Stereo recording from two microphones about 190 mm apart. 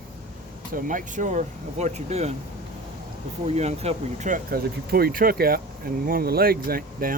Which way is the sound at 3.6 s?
35° right (ahead or behind).